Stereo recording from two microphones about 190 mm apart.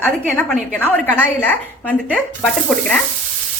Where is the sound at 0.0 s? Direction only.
5° left (ahead or behind).